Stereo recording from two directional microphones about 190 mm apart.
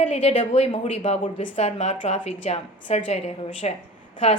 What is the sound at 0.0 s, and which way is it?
A woman's voice, 30° left (ahead or behind).